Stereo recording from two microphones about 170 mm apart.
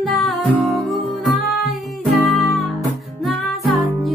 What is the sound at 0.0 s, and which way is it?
Music, centre (ahead or behind).